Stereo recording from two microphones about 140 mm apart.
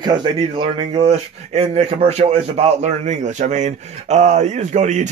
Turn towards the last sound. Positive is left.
turn(degrees=-60)  # may be behind; listen again after turning